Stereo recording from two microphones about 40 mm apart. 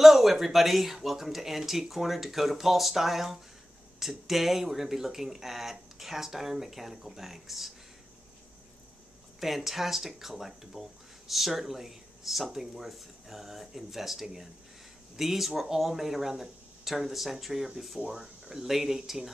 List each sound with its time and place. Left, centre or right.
0.0 s speech: centre
9.4 s speech: centre